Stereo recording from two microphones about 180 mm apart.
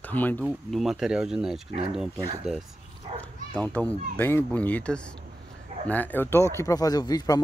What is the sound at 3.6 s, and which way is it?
Speech, 5° left (ahead or behind).